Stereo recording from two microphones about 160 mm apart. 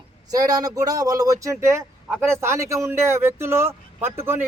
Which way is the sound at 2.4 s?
15° right (ahead or behind).